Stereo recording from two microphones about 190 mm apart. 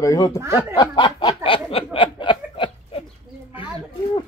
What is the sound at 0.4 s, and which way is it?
Speech, 15° right (ahead or behind).